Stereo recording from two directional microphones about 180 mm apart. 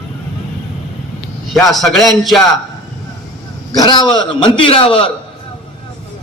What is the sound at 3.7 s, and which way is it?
A man's voice, 20° left (ahead or behind).